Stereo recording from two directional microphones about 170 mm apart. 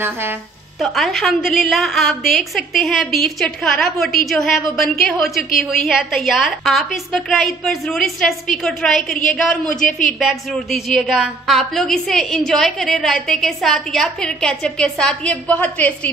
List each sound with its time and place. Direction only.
0.7 s a woman's voice: centre (ahead or behind)
9.8 s a woman's voice: 50° left (ahead or behind)
10.1 s a woman's voice: centre (ahead or behind)